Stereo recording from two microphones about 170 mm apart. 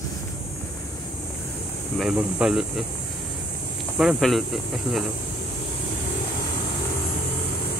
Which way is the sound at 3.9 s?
Centre (ahead or behind).